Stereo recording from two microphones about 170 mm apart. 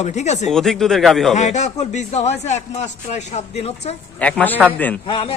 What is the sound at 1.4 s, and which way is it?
Speech, 40° left (ahead or behind).